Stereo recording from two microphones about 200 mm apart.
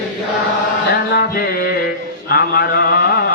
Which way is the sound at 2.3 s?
50° left (ahead or behind).